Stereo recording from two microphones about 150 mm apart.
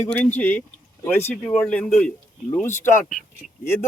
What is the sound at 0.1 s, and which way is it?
A man's voice, 10° left (ahead or behind).